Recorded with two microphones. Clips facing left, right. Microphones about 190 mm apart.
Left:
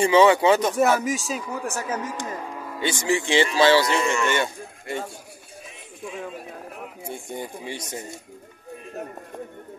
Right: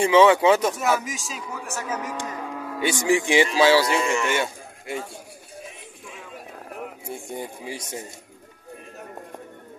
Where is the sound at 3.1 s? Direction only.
15° right (ahead or behind).